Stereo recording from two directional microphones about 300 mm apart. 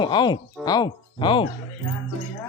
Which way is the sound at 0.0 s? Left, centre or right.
Centre.